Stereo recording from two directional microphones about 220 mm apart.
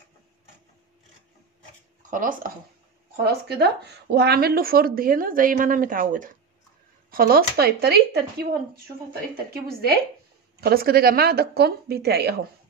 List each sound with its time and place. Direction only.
2.0 s speech: 35° right (ahead or behind)
3.3 s speech: 45° right (ahead or behind)
9.5 s speech: 45° right (ahead or behind)